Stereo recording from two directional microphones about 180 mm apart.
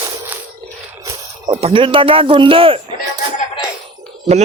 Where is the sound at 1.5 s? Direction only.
30° right (ahead or behind).